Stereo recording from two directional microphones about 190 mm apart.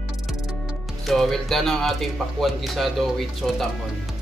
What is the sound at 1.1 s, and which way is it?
Speech, centre (ahead or behind).